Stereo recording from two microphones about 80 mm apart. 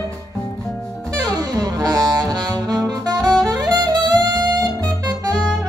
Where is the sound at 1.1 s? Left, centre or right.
Right.